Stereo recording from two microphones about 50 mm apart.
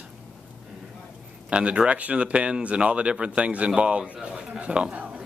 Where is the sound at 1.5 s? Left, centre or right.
Right.